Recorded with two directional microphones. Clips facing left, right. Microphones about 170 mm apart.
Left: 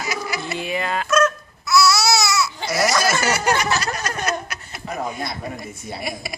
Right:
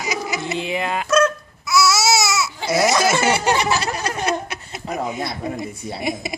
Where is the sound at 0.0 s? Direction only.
20° right (ahead or behind).